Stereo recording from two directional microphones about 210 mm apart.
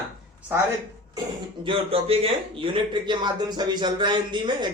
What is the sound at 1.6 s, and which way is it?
A man's voice, 25° right (ahead or behind).